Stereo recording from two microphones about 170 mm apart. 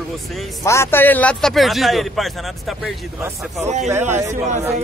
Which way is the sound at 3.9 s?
15° right (ahead or behind).